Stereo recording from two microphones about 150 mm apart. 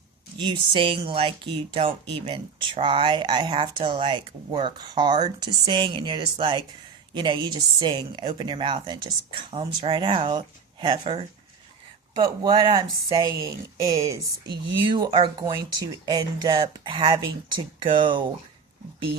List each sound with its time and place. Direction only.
0.3 s speech: 30° right (ahead or behind)